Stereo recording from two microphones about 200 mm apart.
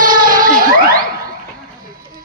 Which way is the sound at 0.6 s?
45° right (ahead or behind).